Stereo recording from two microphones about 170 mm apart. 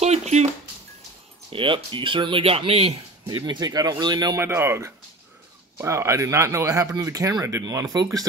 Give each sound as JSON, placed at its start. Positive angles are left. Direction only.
{"t": 0.0, "sound": "music", "side_deg": -40}
{"t": 1.5, "sound": "speech", "side_deg": -30}
{"t": 3.3, "sound": "speech", "side_deg": -25}